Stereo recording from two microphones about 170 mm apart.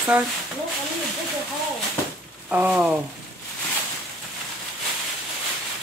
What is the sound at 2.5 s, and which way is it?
Speech, 10° right (ahead or behind).